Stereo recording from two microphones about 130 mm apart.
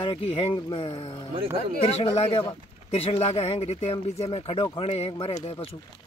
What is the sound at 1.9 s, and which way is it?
Speech, 55° left (ahead or behind).